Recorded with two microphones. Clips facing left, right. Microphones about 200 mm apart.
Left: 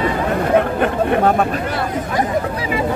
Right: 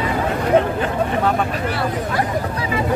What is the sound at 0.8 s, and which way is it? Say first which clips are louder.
Speech: left 4 dB; 55° left (ahead or behind).